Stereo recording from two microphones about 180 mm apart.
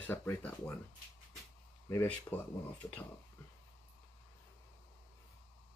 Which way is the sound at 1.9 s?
10° left (ahead or behind).